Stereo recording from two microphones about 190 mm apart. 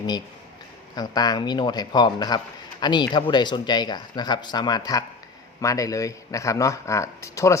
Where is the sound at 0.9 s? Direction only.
20° left (ahead or behind).